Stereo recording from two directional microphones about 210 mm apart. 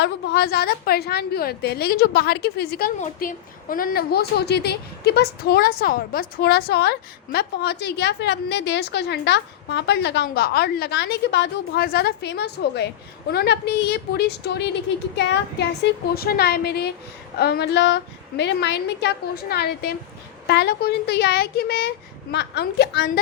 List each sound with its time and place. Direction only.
0.0 s a woman's voice: 50° left (ahead or behind)